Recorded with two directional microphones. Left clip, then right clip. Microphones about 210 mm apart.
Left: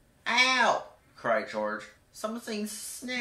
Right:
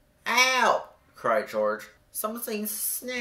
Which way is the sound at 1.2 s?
50° right (ahead or behind).